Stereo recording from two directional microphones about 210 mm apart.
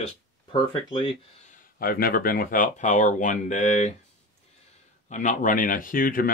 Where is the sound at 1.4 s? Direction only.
45° left (ahead or behind).